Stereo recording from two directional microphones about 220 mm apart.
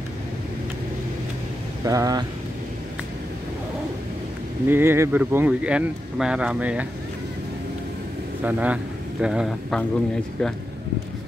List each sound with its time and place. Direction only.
1.9 s speech: 15° right (ahead or behind)
4.6 s speech: 10° right (ahead or behind)
8.5 s speech: 5° right (ahead or behind)